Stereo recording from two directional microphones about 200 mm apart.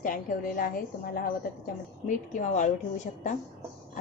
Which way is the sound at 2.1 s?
40° left (ahead or behind).